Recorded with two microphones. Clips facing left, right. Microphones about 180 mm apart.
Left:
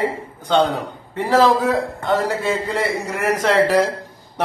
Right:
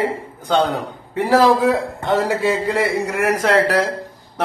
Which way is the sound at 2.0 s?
15° right (ahead or behind).